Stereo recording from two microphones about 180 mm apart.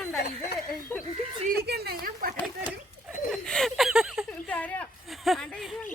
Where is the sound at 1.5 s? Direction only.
60° right (ahead or behind).